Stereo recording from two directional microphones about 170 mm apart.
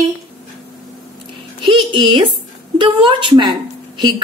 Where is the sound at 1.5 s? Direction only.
30° right (ahead or behind).